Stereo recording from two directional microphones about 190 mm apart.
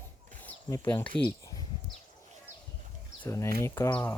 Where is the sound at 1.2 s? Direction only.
15° left (ahead or behind).